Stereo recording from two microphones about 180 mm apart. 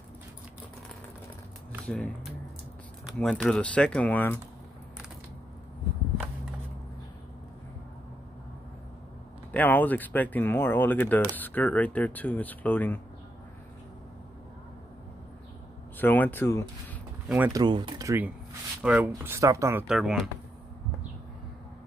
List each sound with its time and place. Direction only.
1.9 s speech: centre (ahead or behind)
9.5 s speech: 10° left (ahead or behind)
16.0 s speech: 10° left (ahead or behind)
17.3 s speech: 10° right (ahead or behind)
17.6 s speech: 25° right (ahead or behind)
19.9 s speech: centre (ahead or behind)